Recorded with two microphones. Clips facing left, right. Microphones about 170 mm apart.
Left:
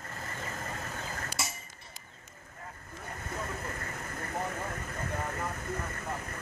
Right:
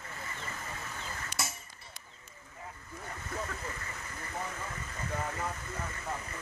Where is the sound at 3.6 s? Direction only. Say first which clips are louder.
Left 3 dB; 55° left (ahead or behind).